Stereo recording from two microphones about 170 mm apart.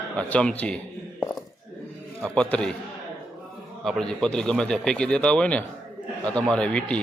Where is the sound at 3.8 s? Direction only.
Centre (ahead or behind).